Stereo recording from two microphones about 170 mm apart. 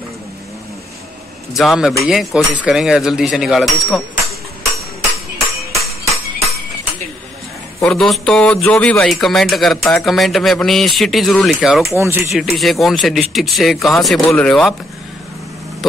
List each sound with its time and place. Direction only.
1.5 s speech: centre (ahead or behind)
5.7 s music: 20° right (ahead or behind)
7.8 s speech: 5° left (ahead or behind)
12.0 s speech: 15° right (ahead or behind)
12.5 s speech: centre (ahead or behind)